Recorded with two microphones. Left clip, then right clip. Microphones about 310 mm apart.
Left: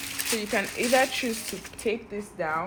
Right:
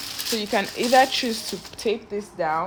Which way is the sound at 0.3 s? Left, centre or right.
Right.